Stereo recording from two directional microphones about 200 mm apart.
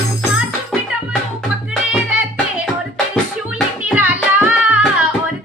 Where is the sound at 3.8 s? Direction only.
10° right (ahead or behind).